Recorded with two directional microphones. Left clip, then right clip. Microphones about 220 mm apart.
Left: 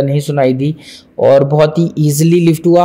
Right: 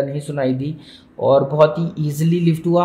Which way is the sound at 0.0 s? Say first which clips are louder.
Left 8 dB; 35° left (ahead or behind).